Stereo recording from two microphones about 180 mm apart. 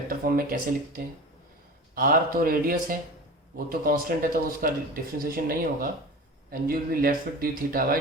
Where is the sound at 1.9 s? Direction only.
55° right (ahead or behind).